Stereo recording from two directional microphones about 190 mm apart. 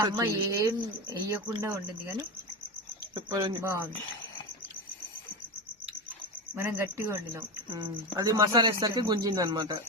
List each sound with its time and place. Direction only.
0.0 s speech: 15° right (ahead or behind)
6.6 s speech: 10° right (ahead or behind)